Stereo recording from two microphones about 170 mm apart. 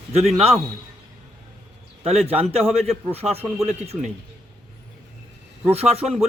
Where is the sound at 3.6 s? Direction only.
40° right (ahead or behind).